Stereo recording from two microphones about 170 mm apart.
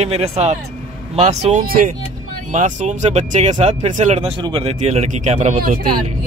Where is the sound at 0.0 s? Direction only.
40° right (ahead or behind).